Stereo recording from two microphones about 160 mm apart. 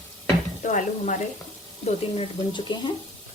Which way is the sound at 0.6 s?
50° left (ahead or behind).